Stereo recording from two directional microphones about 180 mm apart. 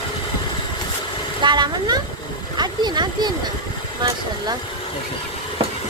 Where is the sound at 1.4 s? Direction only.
25° right (ahead or behind).